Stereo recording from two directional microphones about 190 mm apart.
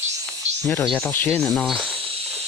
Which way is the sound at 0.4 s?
35° right (ahead or behind).